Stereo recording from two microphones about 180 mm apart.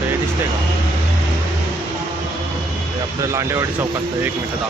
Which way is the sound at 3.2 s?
15° right (ahead or behind).